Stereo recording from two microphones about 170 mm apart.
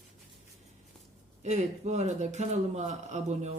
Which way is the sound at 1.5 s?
40° right (ahead or behind).